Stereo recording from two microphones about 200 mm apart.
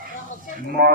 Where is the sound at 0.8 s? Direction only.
55° right (ahead or behind).